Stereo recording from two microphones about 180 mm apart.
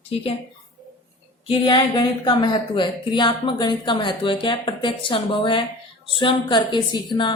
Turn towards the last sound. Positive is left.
turn(degrees=25)  # may be behind; listen again after turning